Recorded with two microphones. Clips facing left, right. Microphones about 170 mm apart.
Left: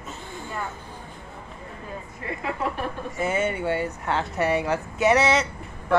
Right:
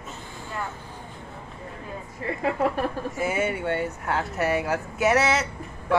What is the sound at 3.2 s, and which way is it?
Speech, 5° right (ahead or behind).